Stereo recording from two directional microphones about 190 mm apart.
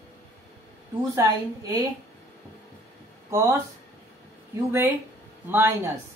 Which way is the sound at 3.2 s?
15° right (ahead or behind).